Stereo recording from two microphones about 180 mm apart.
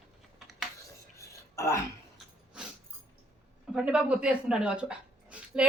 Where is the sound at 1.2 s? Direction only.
15° left (ahead or behind).